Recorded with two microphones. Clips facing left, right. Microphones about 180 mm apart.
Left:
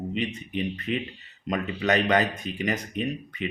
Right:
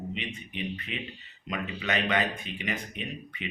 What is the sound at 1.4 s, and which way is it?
Speech, 40° left (ahead or behind).